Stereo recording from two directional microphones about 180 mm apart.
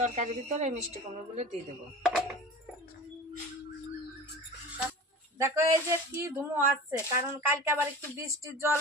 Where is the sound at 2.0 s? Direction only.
Centre (ahead or behind).